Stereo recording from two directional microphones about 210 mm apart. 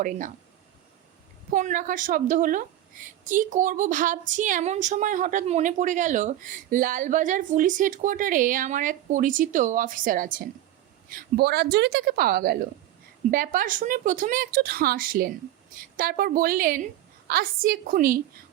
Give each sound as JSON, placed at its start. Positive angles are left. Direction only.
{"t": 1.5, "sound": "a woman's voice", "side_deg": -40}